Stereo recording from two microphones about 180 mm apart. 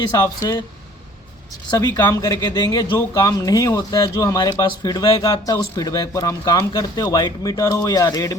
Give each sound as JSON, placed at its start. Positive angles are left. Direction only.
{"t": 0.1, "sound": "speech", "side_deg": 20}
{"t": 1.8, "sound": "speech", "side_deg": 15}